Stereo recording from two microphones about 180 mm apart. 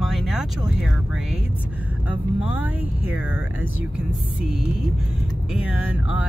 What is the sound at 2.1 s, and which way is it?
Speech, 10° right (ahead or behind).